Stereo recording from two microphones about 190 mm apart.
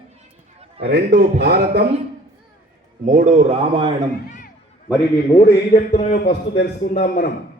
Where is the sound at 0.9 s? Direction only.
60° right (ahead or behind).